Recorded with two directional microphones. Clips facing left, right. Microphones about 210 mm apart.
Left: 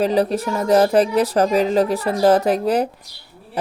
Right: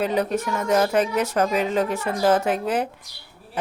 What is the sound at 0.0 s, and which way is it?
Speech, 35° left (ahead or behind).